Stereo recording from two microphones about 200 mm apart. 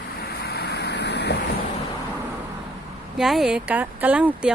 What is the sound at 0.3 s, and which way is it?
Vehicle, 55° left (ahead or behind).